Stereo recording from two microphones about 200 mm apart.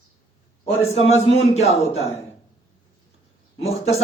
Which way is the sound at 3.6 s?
30° left (ahead or behind).